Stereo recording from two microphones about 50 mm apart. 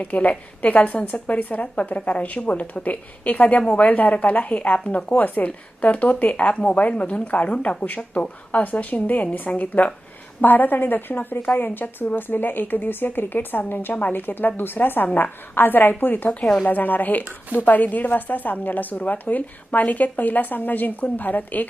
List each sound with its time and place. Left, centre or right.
0.0 s a woman's voice: left
16.4 s a woman's voice: centre
16.6 s a woman's voice: left